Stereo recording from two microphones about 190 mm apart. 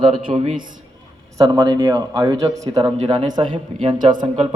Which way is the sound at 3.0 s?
30° right (ahead or behind).